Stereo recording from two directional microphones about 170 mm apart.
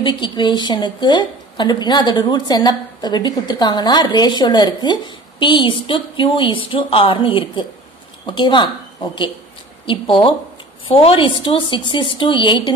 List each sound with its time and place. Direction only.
0.0 s a woman's voice: 30° left (ahead or behind)
9.8 s a woman's voice: 30° left (ahead or behind)